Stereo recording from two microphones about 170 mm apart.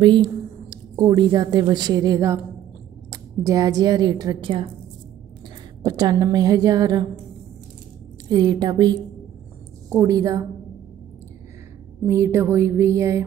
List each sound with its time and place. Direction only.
0.0 s a woman's voice: 25° right (ahead or behind)
5.8 s a woman's voice: 20° right (ahead or behind)
8.3 s a woman's voice: 25° right (ahead or behind)
12.1 s a sound: 15° right (ahead or behind)